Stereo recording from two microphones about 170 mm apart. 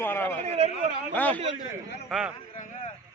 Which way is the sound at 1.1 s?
10° left (ahead or behind).